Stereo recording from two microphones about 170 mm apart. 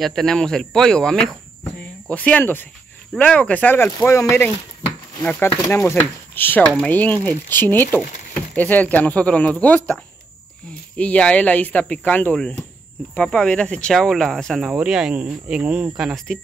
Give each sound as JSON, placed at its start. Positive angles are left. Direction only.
{"t": 0.0, "sound": "speech", "side_deg": 0}